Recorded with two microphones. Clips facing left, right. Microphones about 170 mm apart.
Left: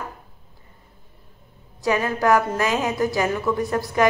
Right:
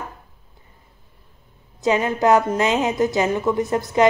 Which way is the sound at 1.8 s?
20° right (ahead or behind).